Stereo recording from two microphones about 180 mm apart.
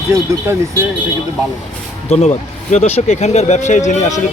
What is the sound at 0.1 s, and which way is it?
Speech, 15° right (ahead or behind).